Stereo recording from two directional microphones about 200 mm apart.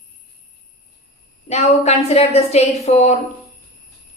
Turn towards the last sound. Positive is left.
turn(degrees=35)  # may be behind; listen again after turning